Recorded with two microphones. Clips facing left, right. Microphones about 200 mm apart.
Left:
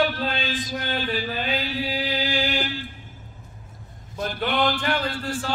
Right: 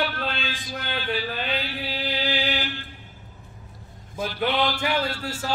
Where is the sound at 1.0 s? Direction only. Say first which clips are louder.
Left 1 dB; 45° left (ahead or behind).